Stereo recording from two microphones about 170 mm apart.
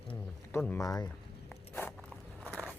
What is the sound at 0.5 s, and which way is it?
Speech, 15° left (ahead or behind).